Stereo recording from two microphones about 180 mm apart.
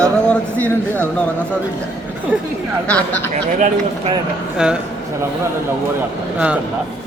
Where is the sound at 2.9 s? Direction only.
5° left (ahead or behind).